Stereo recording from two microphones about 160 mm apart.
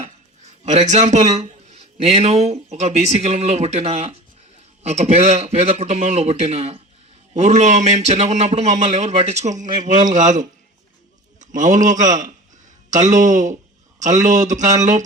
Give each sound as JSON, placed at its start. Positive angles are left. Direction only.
{"t": 0.6, "sound": "a man's voice", "side_deg": -45}